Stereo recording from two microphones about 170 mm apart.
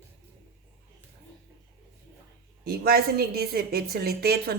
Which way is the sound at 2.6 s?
65° right (ahead or behind).